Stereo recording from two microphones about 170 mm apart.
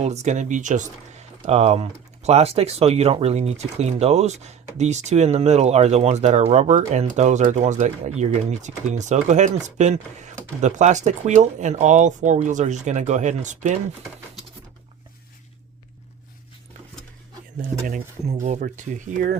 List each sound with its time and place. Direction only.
0.0 s speech: 40° right (ahead or behind)
17.6 s speech: 50° right (ahead or behind)